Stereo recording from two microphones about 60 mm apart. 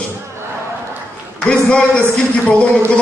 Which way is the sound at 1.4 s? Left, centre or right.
Centre.